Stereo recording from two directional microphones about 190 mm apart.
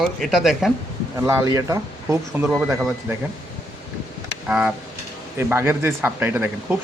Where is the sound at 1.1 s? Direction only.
15° right (ahead or behind).